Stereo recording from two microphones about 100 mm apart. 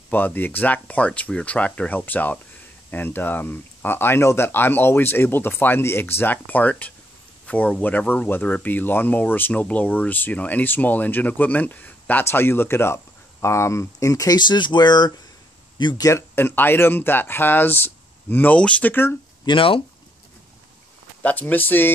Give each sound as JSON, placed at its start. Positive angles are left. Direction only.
{"t": 0.1, "sound": "speech", "side_deg": 20}
{"t": 16.0, "sound": "speech", "side_deg": 30}
{"t": 19.4, "sound": "speech", "side_deg": 60}
{"t": 21.2, "sound": "speech", "side_deg": 15}